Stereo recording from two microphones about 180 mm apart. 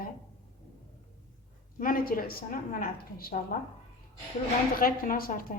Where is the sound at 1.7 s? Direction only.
50° left (ahead or behind).